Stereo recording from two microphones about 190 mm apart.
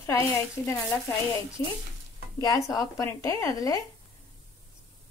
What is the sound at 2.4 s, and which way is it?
Speech, 20° left (ahead or behind).